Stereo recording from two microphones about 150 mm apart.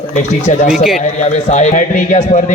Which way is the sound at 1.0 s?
50° left (ahead or behind).